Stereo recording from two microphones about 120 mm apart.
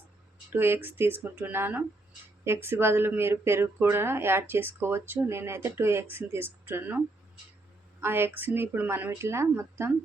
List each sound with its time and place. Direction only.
0.5 s speech: 20° right (ahead or behind)
8.0 s speech: 20° right (ahead or behind)